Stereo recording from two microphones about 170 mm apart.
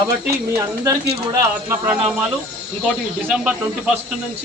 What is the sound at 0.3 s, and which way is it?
Speech, 15° right (ahead or behind).